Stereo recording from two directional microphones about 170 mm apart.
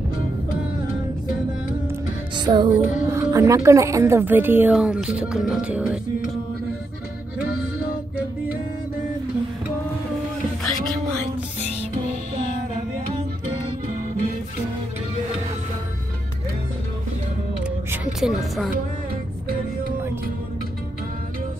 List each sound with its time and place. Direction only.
2.3 s music: 25° right (ahead or behind)
2.8 s a woman's voice: 15° right (ahead or behind)
17.9 s speech: centre (ahead or behind)